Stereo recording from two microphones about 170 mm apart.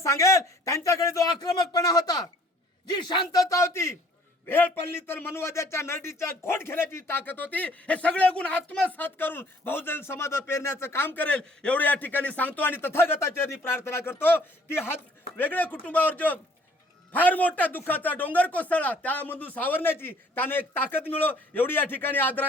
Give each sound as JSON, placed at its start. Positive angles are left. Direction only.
{"t": 0.0, "sound": "a man's voice", "side_deg": 20}